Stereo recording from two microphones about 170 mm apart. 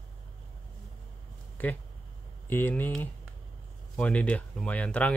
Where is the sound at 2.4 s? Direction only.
10° left (ahead or behind).